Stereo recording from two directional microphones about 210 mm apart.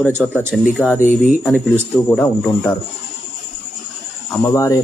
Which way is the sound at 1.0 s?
40° left (ahead or behind).